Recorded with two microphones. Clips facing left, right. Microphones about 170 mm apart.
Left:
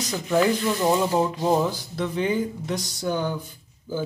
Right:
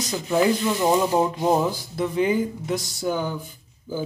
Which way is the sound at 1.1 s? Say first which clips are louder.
Right 1 dB; 15° right (ahead or behind).